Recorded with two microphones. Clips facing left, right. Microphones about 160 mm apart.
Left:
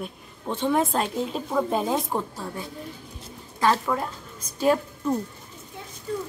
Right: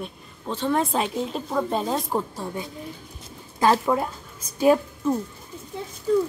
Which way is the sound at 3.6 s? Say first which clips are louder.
Right 3 dB; 25° right (ahead or behind).